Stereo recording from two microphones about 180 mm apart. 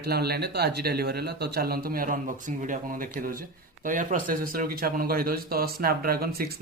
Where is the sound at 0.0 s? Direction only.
60° right (ahead or behind).